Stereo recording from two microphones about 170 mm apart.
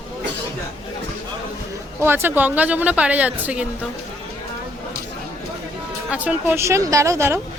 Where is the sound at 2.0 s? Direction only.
15° right (ahead or behind).